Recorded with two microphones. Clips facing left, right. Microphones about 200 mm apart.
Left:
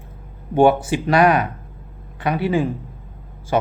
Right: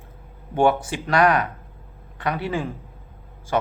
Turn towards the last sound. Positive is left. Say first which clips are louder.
# left 3 dB
turn(degrees=10)  # may be behind; listen again after turning